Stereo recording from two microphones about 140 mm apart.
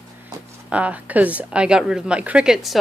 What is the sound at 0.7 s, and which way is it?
Speech, 10° right (ahead or behind).